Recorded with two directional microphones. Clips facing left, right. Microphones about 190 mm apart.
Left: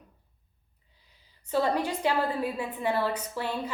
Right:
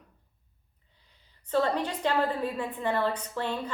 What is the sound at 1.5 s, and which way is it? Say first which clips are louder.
A woman's voice: even; 10° left (ahead or behind).